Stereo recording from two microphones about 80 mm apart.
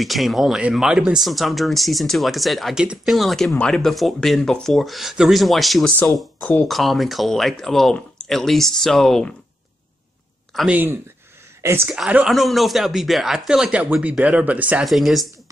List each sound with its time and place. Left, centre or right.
0.0 s speech: centre
10.7 s speech: right
12.3 s speech: centre
14.9 s speech: centre